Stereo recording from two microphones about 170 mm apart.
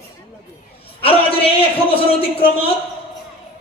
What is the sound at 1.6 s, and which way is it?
Speech, 35° left (ahead or behind).